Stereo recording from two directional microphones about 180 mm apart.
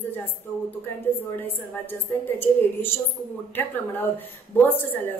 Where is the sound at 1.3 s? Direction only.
10° left (ahead or behind).